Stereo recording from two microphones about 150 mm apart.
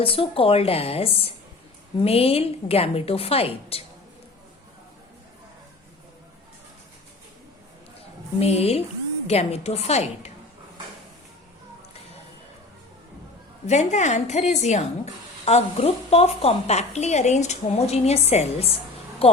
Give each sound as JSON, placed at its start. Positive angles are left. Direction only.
{"t": 0.0, "sound": "a woman's voice", "side_deg": 40}
{"t": 8.4, "sound": "a woman's voice", "side_deg": 45}
{"t": 13.7, "sound": "a woman's voice", "side_deg": 50}
{"t": 19.2, "sound": "a sound", "side_deg": 40}